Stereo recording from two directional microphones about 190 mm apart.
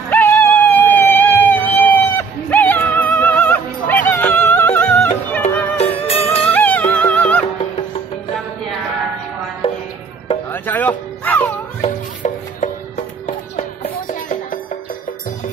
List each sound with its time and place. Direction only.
0.1 s music: 10° left (ahead or behind)
5.8 s music: 30° left (ahead or behind)
6.2 s music: 10° left (ahead or behind)
9.6 s music: 25° left (ahead or behind)
10.5 s music: 10° left (ahead or behind)
11.8 s music: 40° left (ahead or behind)